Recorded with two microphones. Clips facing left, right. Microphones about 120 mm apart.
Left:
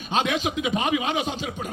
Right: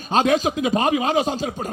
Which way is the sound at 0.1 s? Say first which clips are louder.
Right 6 dB; 40° right (ahead or behind).